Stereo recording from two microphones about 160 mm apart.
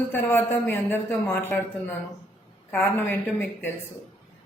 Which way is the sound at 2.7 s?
10° left (ahead or behind).